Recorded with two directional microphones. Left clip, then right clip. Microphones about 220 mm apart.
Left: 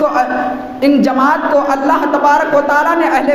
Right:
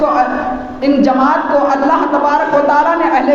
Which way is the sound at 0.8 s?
55° left (ahead or behind).